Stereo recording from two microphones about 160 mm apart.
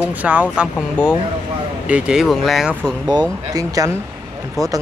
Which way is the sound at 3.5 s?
20° right (ahead or behind).